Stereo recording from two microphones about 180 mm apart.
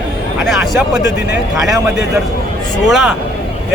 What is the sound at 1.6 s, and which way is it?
Speech, 5° right (ahead or behind).